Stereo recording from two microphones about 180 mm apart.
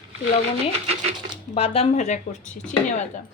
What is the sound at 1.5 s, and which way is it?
Speech, 35° left (ahead or behind).